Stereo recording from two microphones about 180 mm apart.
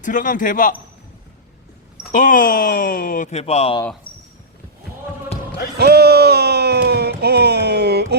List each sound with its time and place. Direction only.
0.0 s speech: 45° left (ahead or behind)
2.1 s speech: 45° left (ahead or behind)
4.1 s a sound: 25° left (ahead or behind)
5.7 s speech: 60° right (ahead or behind)